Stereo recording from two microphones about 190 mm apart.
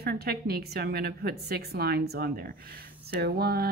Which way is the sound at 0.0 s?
55° right (ahead or behind).